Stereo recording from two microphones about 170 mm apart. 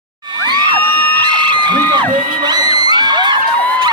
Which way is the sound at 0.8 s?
10° left (ahead or behind).